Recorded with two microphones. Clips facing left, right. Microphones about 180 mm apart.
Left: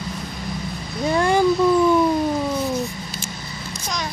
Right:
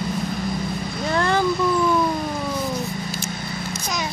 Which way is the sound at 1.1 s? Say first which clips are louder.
Left 3 dB; 15° left (ahead or behind).